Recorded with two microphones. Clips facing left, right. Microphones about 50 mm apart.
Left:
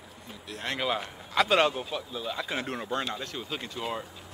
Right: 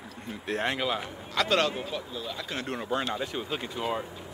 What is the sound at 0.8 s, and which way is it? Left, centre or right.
Speech, centre.